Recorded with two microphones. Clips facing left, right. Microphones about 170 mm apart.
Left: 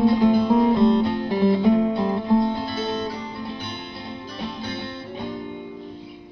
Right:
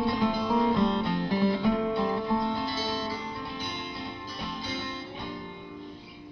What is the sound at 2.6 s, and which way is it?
Music, 60° left (ahead or behind).